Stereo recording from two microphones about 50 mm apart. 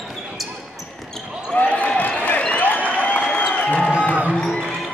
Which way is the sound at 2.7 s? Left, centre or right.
Left.